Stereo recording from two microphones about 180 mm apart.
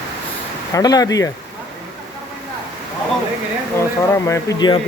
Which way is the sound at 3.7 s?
15° left (ahead or behind).